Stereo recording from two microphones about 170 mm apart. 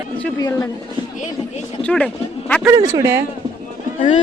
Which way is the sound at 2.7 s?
20° right (ahead or behind).